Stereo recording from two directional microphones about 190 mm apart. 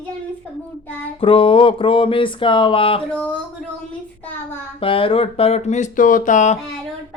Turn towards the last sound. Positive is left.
turn(degrees=40)  # may be behind; listen again after turning